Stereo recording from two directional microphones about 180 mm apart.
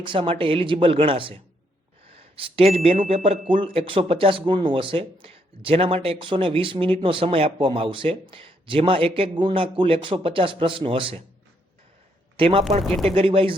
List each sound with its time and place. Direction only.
0.0 s speech: 30° right (ahead or behind)
12.4 s speech: 30° right (ahead or behind)
12.8 s speech: centre (ahead or behind)
13.1 s speech: 30° right (ahead or behind)